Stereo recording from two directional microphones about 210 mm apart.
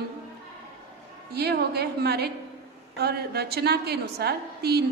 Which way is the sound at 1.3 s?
50° right (ahead or behind).